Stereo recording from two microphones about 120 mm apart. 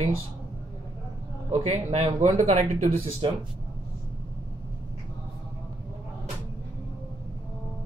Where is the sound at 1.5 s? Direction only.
70° right (ahead or behind).